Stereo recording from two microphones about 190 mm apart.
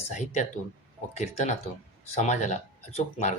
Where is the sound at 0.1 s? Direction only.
40° left (ahead or behind).